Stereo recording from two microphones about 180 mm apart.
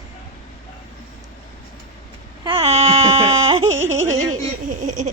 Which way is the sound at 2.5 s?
35° right (ahead or behind).